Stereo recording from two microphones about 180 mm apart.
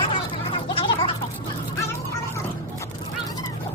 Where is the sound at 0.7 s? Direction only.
30° left (ahead or behind).